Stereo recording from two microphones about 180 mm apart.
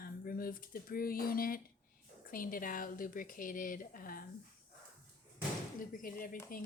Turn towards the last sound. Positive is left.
turn(degrees=50)  # may be behind; listen again after turning